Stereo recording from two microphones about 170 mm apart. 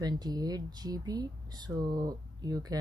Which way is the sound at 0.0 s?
25° right (ahead or behind).